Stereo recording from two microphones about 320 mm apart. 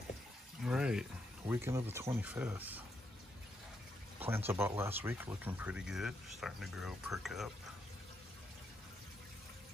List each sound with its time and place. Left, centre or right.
0.6 s speech: centre
4.2 s speech: centre